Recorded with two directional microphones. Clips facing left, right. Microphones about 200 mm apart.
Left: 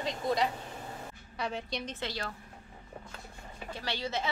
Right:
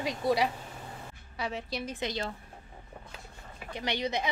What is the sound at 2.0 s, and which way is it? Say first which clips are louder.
Speech: right 4 dB; 20° right (ahead or behind).